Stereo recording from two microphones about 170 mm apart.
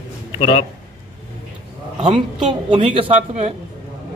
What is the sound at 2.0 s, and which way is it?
Speech, 40° right (ahead or behind).